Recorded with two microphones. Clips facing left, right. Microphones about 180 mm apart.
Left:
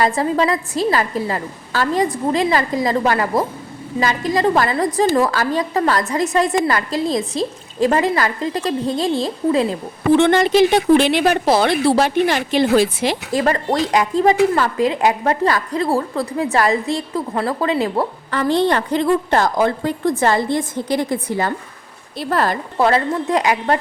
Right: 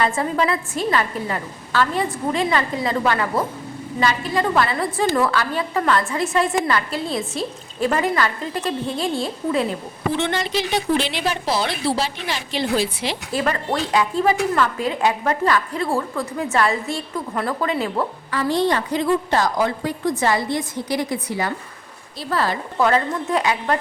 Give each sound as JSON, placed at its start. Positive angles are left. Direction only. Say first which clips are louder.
{"t": 0.0, "sound": "a woman's voice", "louder": "left 3 dB", "side_deg": 35}
{"t": 10.2, "sound": "speech", "louder": "left 11 dB", "side_deg": 55}
{"t": 13.4, "sound": "a woman's voice", "louder": "left 4 dB", "side_deg": 35}
{"t": 18.5, "sound": "a woman's voice", "louder": "left 3 dB", "side_deg": 60}
{"t": 22.8, "sound": "a woman's voice", "louder": "left 3 dB", "side_deg": 35}